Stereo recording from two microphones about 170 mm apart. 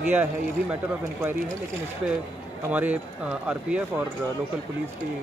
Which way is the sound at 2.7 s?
10° right (ahead or behind).